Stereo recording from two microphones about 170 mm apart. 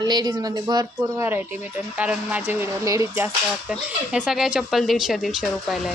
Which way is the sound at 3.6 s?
5° right (ahead or behind).